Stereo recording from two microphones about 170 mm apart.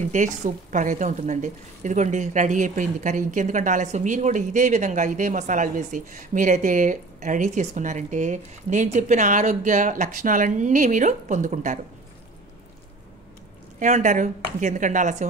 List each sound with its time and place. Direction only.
0.1 s a woman's voice: 45° right (ahead or behind)
13.7 s a woman's voice: 45° right (ahead or behind)